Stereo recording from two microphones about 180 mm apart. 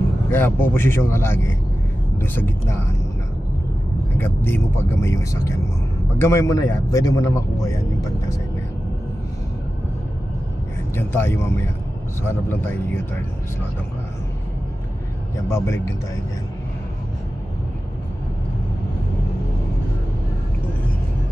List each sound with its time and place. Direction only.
0.3 s a man's voice: 10° left (ahead or behind)
4.2 s a man's voice: 10° left (ahead or behind)
11.0 s a man's voice: 15° left (ahead or behind)
15.3 s a man's voice: 15° left (ahead or behind)